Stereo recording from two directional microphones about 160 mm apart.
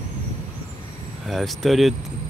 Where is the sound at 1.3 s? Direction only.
Centre (ahead or behind).